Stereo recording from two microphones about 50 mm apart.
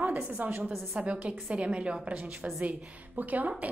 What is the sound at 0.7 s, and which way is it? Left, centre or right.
A woman's voice, right.